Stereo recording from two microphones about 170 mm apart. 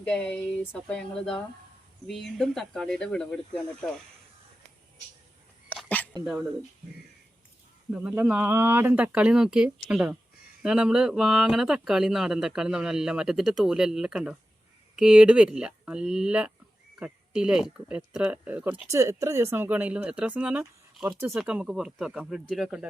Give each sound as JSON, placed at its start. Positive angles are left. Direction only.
{"t": 0.0, "sound": "speech", "side_deg": 5}
{"t": 5.6, "sound": "a sound", "side_deg": 10}
{"t": 8.1, "sound": "speech", "side_deg": -10}